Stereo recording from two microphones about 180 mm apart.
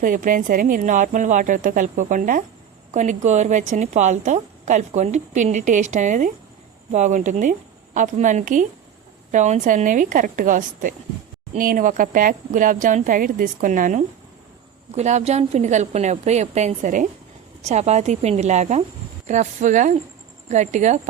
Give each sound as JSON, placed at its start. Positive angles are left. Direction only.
{"t": 0.0, "sound": "a woman's voice", "side_deg": -50}